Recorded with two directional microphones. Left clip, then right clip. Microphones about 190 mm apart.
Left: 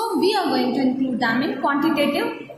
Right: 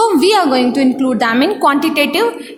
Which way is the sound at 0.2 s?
50° right (ahead or behind).